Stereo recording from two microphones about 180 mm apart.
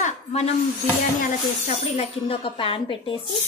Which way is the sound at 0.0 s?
35° left (ahead or behind).